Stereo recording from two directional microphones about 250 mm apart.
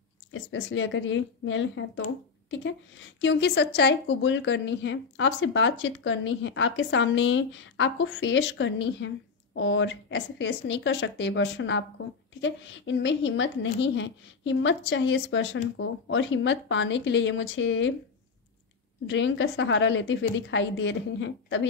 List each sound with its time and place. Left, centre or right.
0.3 s a woman's voice: left
19.0 s a woman's voice: left